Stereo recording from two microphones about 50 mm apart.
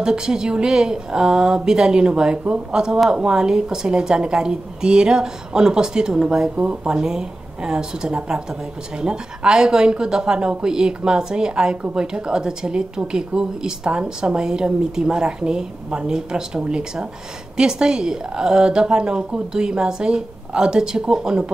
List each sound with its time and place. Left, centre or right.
0.0 s speech: centre
6.5 s speech: right
6.9 s speech: centre